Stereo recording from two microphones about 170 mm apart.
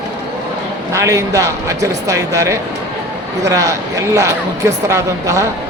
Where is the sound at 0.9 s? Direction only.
20° right (ahead or behind).